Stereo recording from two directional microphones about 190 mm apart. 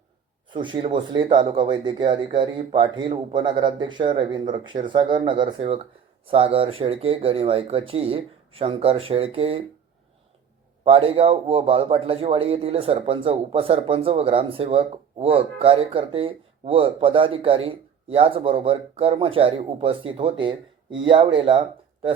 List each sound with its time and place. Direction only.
0.5 s speech: 25° right (ahead or behind)
10.8 s speech: 30° right (ahead or behind)